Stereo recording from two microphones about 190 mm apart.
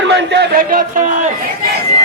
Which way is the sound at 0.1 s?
65° right (ahead or behind).